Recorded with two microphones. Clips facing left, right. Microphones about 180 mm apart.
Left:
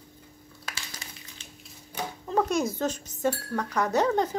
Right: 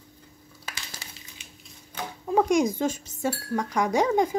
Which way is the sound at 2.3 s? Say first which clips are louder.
Right 4 dB; 10° right (ahead or behind).